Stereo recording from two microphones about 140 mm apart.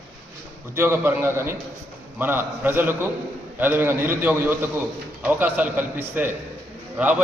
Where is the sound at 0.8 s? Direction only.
15° right (ahead or behind).